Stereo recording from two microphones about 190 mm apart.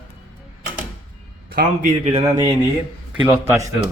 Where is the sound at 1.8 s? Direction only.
30° right (ahead or behind).